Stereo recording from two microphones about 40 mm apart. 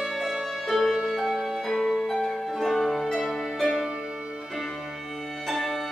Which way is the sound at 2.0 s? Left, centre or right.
Centre.